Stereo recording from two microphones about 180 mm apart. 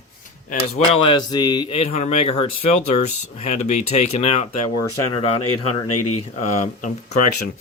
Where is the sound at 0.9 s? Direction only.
25° left (ahead or behind).